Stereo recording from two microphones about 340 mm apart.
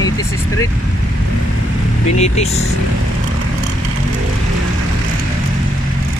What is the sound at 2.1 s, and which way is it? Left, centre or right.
Speech, centre.